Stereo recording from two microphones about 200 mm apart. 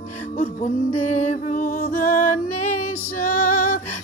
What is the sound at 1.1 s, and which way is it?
Music, 40° left (ahead or behind).